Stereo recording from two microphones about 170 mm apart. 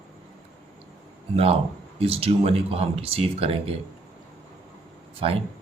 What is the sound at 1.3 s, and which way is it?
Speech, 35° right (ahead or behind).